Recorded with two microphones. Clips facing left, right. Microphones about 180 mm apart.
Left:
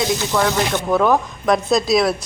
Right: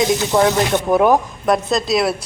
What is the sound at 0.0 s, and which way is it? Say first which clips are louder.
Speech: right 4 dB; 20° right (ahead or behind).